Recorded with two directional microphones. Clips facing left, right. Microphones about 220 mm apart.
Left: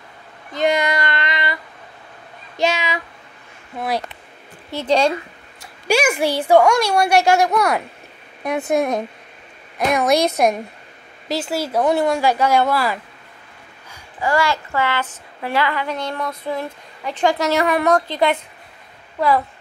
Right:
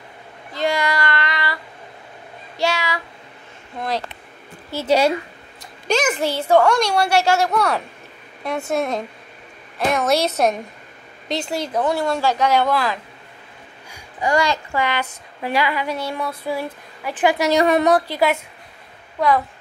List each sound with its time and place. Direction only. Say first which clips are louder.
0.5 s child singing: left 3 dB; 20° left (ahead or behind)
2.5 s a child's voice: left 2 dB; 20° left (ahead or behind)
3.7 s a woman's voice: left 2 dB; 10° left (ahead or behind)
4.6 s a child's voice: even; 5° right (ahead or behind)
5.9 s a woman's voice: left 2 dB; 10° left (ahead or behind)
13.8 s a child's voice: even; 15° right (ahead or behind)
17.9 s a child's voice: even; 10° right (ahead or behind)
19.1 s speech: even; 5° left (ahead or behind)